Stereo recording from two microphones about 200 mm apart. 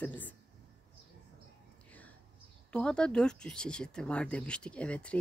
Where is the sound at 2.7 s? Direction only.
5° left (ahead or behind).